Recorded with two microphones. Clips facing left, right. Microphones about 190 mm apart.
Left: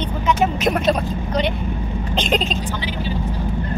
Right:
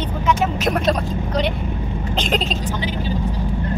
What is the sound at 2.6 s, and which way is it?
Speech, 45° right (ahead or behind).